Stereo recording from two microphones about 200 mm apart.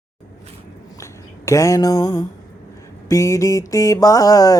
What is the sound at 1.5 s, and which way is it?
Mantra, 15° left (ahead or behind).